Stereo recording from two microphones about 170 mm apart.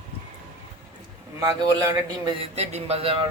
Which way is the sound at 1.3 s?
20° right (ahead or behind).